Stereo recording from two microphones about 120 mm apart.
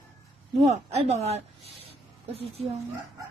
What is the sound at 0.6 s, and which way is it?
Speech, 65° right (ahead or behind).